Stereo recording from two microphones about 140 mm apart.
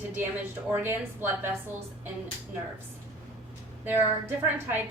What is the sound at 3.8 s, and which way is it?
Speech, 15° right (ahead or behind).